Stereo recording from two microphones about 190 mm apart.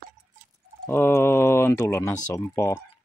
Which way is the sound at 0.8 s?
10° left (ahead or behind).